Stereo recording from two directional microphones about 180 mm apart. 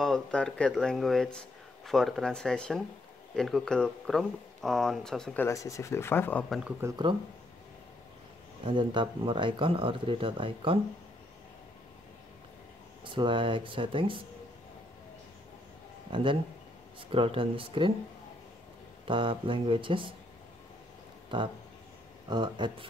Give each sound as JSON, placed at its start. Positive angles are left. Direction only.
{"t": 0.0, "sound": "speech", "side_deg": 5}
{"t": 6.8, "sound": "speech", "side_deg": -20}
{"t": 8.6, "sound": "speech", "side_deg": -25}
{"t": 13.0, "sound": "speech", "side_deg": -25}
{"t": 16.1, "sound": "speech", "side_deg": -30}
{"t": 19.0, "sound": "speech", "side_deg": -30}
{"t": 21.3, "sound": "speech", "side_deg": -25}